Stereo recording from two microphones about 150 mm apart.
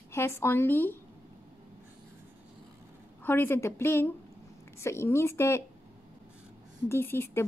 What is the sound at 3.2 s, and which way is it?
A woman's voice, 15° left (ahead or behind).